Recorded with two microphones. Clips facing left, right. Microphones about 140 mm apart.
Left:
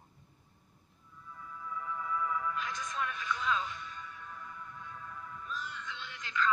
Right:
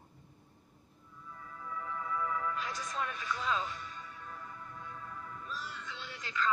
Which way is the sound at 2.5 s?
40° right (ahead or behind).